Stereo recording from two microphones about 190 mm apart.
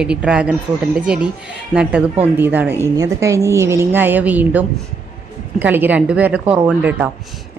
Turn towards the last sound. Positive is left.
turn(degrees=-5)  # may be behind; listen again after turning